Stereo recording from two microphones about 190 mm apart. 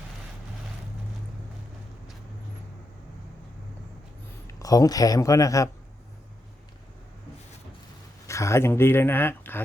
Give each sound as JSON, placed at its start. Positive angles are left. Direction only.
{"t": 4.4, "sound": "speech", "side_deg": 20}
{"t": 8.3, "sound": "speech", "side_deg": 15}